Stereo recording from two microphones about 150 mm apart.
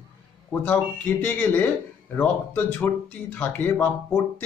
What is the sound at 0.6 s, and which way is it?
Speech, 10° left (ahead or behind).